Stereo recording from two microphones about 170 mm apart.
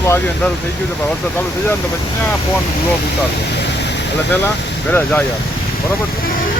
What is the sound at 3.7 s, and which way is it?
Vehicle, 90° left.